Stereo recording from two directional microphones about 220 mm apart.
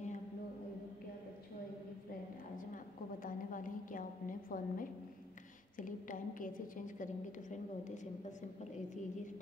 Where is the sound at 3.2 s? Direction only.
35° left (ahead or behind).